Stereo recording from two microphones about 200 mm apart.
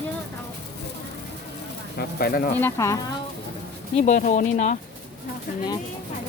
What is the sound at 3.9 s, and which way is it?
Speech, 40° left (ahead or behind).